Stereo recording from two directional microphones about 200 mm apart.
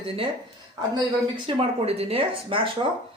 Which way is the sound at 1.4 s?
30° right (ahead or behind).